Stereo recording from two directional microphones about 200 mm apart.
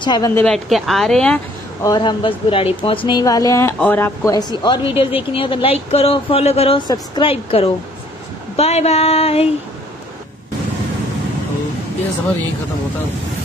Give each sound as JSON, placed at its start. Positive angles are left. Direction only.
{"t": 0.0, "sound": "speech", "side_deg": 20}
{"t": 0.3, "sound": "a woman's voice", "side_deg": 10}
{"t": 1.8, "sound": "speech", "side_deg": 20}
{"t": 8.5, "sound": "a sound", "side_deg": 30}